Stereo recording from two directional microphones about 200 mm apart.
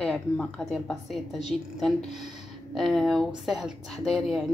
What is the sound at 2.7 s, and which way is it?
Speech, centre (ahead or behind).